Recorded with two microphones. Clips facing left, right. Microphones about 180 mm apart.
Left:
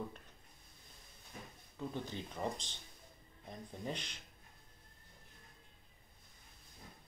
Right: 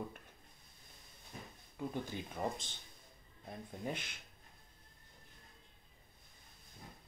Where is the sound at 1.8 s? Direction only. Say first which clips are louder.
Right 1 dB; 10° right (ahead or behind).